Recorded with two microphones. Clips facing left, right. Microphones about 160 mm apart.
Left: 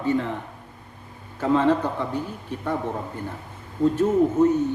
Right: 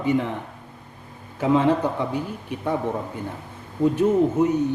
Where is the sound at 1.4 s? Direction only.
15° right (ahead or behind).